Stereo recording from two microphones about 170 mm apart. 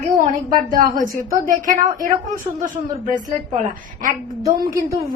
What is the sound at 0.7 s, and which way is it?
A woman's voice, 55° right (ahead or behind).